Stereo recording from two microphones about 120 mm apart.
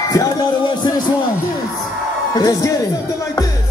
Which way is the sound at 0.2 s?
30° left (ahead or behind).